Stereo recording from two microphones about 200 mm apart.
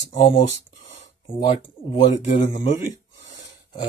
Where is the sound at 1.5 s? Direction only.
40° left (ahead or behind).